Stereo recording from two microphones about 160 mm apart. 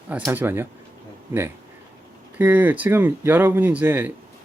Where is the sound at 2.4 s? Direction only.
10° right (ahead or behind).